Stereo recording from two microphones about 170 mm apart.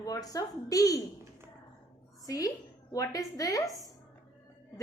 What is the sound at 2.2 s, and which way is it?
A woman's voice, 20° left (ahead or behind).